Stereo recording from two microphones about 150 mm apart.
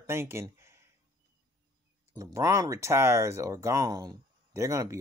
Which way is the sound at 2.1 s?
20° right (ahead or behind).